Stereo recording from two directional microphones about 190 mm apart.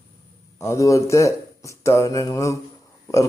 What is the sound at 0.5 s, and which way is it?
Speech, 15° left (ahead or behind).